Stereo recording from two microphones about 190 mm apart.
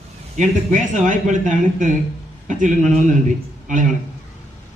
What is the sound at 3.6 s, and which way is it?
Speech, 40° right (ahead or behind).